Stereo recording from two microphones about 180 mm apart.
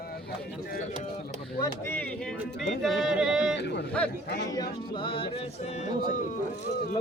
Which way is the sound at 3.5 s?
70° left (ahead or behind).